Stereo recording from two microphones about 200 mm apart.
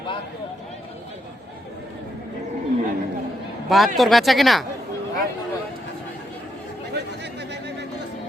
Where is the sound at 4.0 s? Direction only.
Centre (ahead or behind).